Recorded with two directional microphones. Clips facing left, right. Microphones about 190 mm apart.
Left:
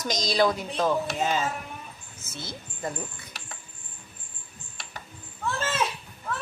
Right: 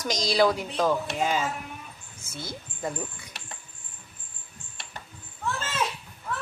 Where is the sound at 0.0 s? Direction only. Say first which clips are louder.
Right 1 dB; 10° right (ahead or behind).